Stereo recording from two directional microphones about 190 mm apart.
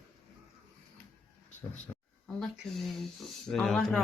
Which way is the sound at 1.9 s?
15° left (ahead or behind).